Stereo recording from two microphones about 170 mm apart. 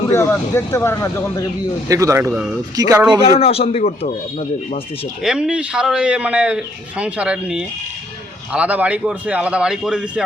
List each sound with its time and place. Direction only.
0.1 s speech: 15° left (ahead or behind)
1.9 s speech: 20° right (ahead or behind)
3.3 s speech: 35° left (ahead or behind)
5.2 s a man's voice: 5° right (ahead or behind)